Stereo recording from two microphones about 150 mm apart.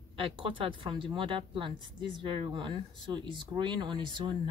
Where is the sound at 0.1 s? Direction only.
35° right (ahead or behind).